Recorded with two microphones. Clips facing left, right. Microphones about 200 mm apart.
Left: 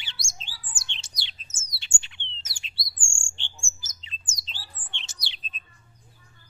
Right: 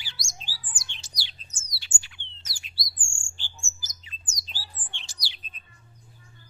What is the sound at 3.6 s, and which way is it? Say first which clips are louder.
Bird: even; 25° left (ahead or behind).